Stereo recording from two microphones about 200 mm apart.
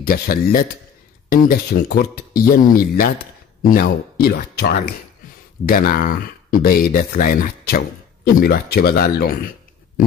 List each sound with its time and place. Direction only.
0.0 s speech: 45° left (ahead or behind)